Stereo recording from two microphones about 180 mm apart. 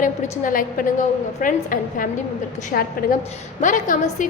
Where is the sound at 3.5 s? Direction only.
45° left (ahead or behind).